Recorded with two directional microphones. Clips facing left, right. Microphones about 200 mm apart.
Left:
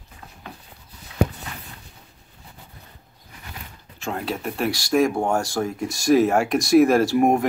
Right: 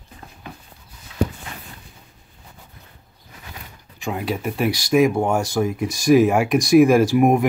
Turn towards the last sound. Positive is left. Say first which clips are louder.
# right 2 dB
turn(degrees=-15)  # may be behind; listen again after turning